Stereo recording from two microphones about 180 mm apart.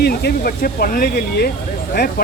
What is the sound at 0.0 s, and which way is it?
Speech, 60° left (ahead or behind).